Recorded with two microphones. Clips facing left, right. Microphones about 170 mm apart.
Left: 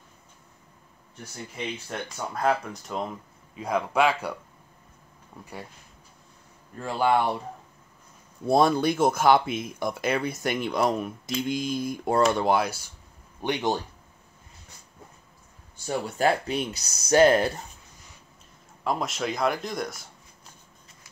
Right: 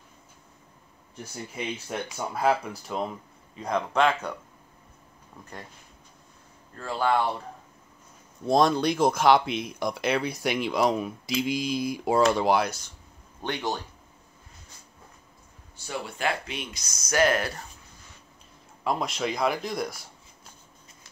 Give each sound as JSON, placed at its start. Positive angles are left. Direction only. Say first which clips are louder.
{"t": 1.9, "sound": "speech", "louder": "right 1 dB", "side_deg": -5}
{"t": 5.4, "sound": "speech", "louder": "left 3 dB", "side_deg": 10}
{"t": 6.8, "sound": "speech", "louder": "left 2 dB", "side_deg": 15}
{"t": 8.5, "sound": "speech", "louder": "left 1 dB", "side_deg": 5}
{"t": 13.4, "sound": "speech", "louder": "left 4 dB", "side_deg": 15}
{"t": 16.2, "sound": "speech", "louder": "left 7 dB", "side_deg": 35}
{"t": 18.9, "sound": "speech", "louder": "even", "side_deg": 0}